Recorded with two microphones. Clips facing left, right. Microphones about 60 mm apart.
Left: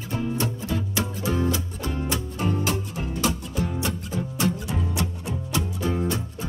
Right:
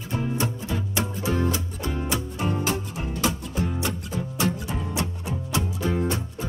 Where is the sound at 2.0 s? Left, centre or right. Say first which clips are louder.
Even; right.